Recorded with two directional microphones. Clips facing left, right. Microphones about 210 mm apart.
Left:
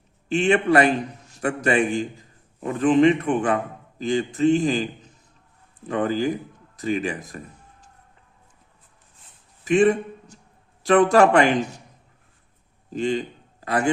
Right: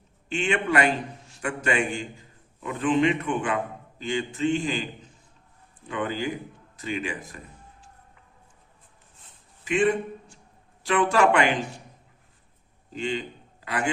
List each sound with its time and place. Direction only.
0.3 s a man's voice: 40° left (ahead or behind)
5.9 s a man's voice: 40° left (ahead or behind)
9.6 s a man's voice: 40° left (ahead or behind)
12.9 s a man's voice: 40° left (ahead or behind)